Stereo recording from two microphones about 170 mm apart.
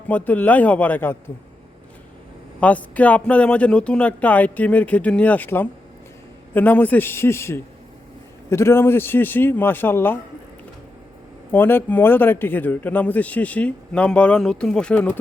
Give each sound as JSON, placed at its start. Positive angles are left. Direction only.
{"t": 0.1, "sound": "a man's voice", "side_deg": 10}
{"t": 2.6, "sound": "a man's voice", "side_deg": 10}
{"t": 11.5, "sound": "a man's voice", "side_deg": 10}